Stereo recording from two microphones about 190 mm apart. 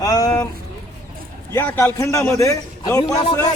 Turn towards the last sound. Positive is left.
turn(degrees=20)  # may be behind; listen again after turning